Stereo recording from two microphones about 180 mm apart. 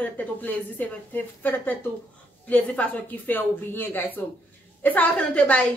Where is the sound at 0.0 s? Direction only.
10° left (ahead or behind).